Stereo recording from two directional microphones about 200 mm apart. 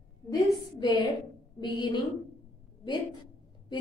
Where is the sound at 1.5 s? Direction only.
20° left (ahead or behind).